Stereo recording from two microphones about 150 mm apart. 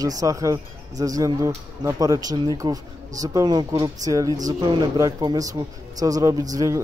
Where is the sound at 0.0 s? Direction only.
25° right (ahead or behind).